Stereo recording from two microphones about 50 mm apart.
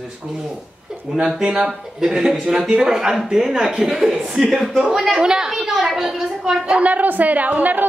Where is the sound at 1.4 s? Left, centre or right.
Centre.